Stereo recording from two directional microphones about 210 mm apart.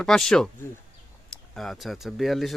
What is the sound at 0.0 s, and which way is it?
Speech, 5° left (ahead or behind).